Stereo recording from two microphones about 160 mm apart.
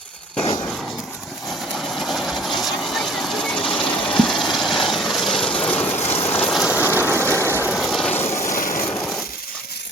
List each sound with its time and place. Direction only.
2.0 s sewing machine: centre (ahead or behind)
6.2 s a sound: 10° left (ahead or behind)
6.5 s rain: 5° right (ahead or behind)
7.7 s vehicle: centre (ahead or behind)
8.1 s vehicle: 15° left (ahead or behind)
8.5 s vehicle: 55° left (ahead or behind)